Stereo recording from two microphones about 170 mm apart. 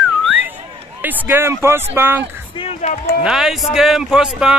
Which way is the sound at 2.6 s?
35° left (ahead or behind).